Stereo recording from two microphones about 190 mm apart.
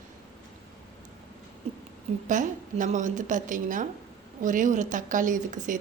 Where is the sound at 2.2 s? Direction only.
40° right (ahead or behind).